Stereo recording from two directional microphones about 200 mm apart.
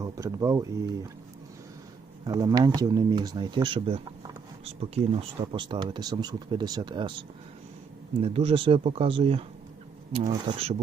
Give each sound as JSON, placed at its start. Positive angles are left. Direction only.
{"t": 0.0, "sound": "speech", "side_deg": -15}
{"t": 2.2, "sound": "speech", "side_deg": -20}
{"t": 8.2, "sound": "speech", "side_deg": -30}